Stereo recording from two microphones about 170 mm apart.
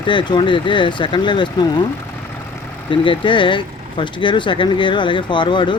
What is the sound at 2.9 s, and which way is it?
Speech, 30° left (ahead or behind).